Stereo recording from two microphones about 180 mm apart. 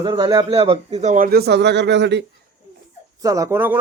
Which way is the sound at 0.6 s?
35° right (ahead or behind).